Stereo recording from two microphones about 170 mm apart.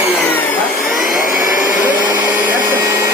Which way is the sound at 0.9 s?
55° left (ahead or behind).